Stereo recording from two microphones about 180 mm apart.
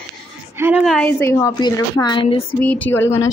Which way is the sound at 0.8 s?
5° left (ahead or behind).